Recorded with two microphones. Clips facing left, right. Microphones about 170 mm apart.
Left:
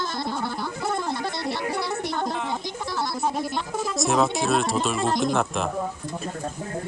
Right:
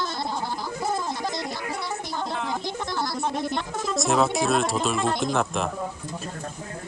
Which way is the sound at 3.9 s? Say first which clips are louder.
Right 1 dB; centre (ahead or behind).